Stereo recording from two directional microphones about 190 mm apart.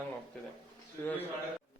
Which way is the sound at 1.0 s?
15° left (ahead or behind).